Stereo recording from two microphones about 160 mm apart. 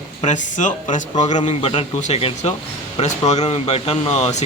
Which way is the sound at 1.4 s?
40° left (ahead or behind).